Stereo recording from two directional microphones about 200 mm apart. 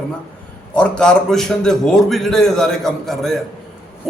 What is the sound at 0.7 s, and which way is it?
A man's voice, 5° left (ahead or behind).